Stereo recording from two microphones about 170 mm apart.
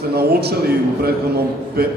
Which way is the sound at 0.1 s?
65° right (ahead or behind).